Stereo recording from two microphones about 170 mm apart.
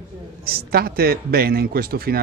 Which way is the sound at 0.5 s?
65° right (ahead or behind).